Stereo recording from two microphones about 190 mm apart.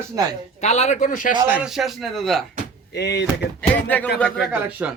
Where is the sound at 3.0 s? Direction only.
60° left (ahead or behind).